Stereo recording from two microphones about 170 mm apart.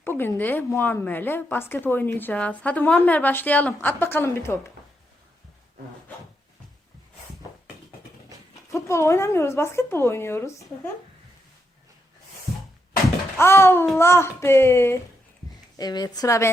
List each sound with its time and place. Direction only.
0.0 s a woman's voice: 10° left (ahead or behind)
8.7 s a woman's voice: 15° left (ahead or behind)
13.3 s a woman's voice: 15° left (ahead or behind)